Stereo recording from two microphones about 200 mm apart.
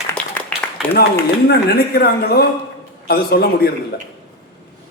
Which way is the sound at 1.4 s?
50° left (ahead or behind).